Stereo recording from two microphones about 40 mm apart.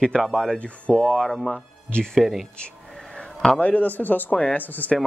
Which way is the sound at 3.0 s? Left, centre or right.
Left.